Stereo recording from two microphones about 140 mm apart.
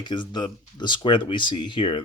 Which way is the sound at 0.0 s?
35° left (ahead or behind).